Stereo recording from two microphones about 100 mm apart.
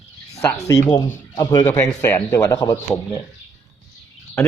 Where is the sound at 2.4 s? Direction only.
35° left (ahead or behind).